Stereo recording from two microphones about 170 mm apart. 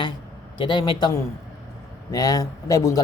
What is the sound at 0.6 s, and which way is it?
Speech, 30° left (ahead or behind).